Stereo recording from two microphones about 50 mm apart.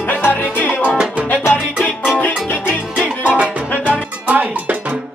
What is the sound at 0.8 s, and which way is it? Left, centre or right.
Music, right.